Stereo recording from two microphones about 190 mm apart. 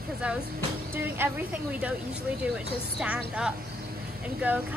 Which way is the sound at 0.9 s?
10° right (ahead or behind).